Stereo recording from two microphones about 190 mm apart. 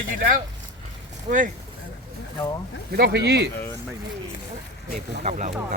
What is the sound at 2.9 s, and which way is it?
Speech, 55° right (ahead or behind).